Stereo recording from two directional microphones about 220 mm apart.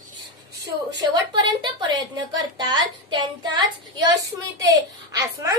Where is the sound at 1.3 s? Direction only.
20° right (ahead or behind).